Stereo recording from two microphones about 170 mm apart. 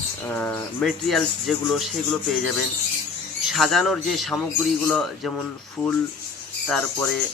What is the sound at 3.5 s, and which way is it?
Speech, centre (ahead or behind).